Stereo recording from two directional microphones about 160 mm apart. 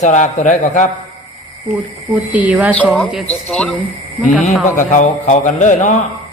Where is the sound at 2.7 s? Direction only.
5° left (ahead or behind).